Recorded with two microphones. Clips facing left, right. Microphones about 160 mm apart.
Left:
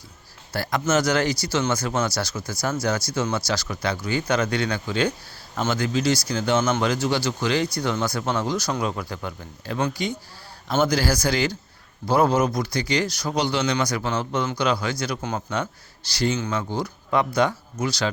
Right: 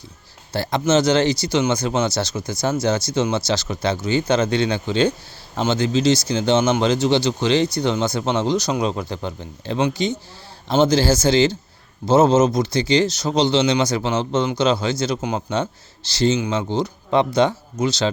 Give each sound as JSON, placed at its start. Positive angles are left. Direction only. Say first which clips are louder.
{"t": 0.5, "sound": "speech", "louder": "right 4 dB", "side_deg": -25}